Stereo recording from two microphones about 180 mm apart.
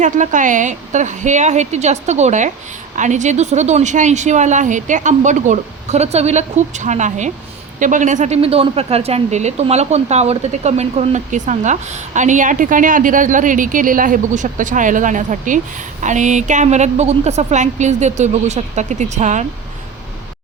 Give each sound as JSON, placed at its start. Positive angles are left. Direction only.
{"t": 0.0, "sound": "a woman's voice", "side_deg": -45}